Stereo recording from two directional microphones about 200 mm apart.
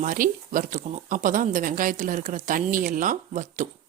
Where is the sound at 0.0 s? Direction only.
40° right (ahead or behind).